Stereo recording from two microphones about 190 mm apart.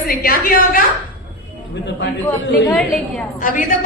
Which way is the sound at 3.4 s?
45° left (ahead or behind).